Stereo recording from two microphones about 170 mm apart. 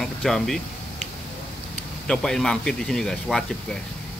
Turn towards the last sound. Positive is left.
turn(degrees=5)  # may be behind; listen again after turning